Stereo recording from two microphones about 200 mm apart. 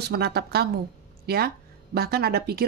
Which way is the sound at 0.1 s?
50° right (ahead or behind).